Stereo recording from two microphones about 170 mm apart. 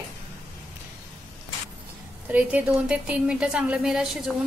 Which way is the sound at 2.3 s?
10° right (ahead or behind).